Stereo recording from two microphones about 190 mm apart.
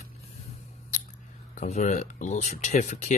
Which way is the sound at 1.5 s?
40° left (ahead or behind).